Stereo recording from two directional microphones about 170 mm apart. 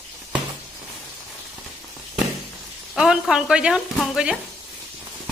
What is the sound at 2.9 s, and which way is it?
Speech, 5° right (ahead or behind).